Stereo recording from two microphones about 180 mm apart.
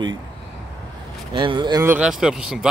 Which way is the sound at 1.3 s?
25° right (ahead or behind).